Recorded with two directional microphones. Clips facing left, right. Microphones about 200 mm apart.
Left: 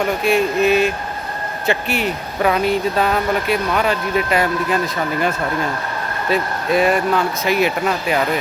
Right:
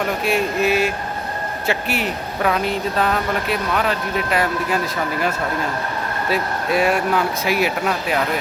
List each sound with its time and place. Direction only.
0.2 s speech: 5° right (ahead or behind)
6.3 s speech: 5° right (ahead or behind)